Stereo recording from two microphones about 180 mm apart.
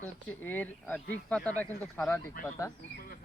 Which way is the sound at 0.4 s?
10° left (ahead or behind).